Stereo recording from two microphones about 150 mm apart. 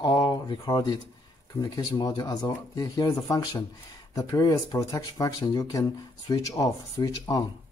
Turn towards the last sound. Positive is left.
turn(degrees=20)  # may be behind; listen again after turning